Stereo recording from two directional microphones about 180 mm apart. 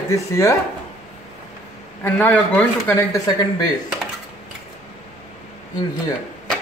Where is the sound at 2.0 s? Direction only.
10° left (ahead or behind).